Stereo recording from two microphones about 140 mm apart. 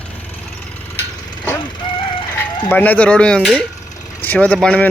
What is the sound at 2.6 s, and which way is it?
Speech, 10° left (ahead or behind).